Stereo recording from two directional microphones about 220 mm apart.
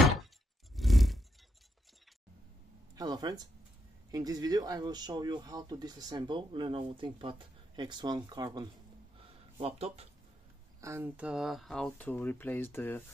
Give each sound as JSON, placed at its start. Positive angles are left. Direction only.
{"t": 0.7, "sound": "a sound", "side_deg": 0}
{"t": 3.0, "sound": "speech", "side_deg": -20}
{"t": 10.8, "sound": "speech", "side_deg": -10}